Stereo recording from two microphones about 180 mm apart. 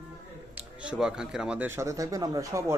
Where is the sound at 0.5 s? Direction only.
5° right (ahead or behind).